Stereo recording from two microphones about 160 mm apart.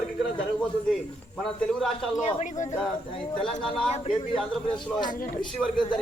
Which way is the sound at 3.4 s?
5° left (ahead or behind).